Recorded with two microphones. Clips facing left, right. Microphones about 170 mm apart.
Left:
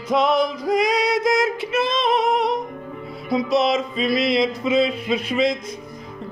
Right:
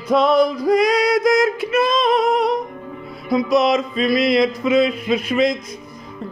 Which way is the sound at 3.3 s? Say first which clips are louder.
Right 3 dB; 25° left (ahead or behind).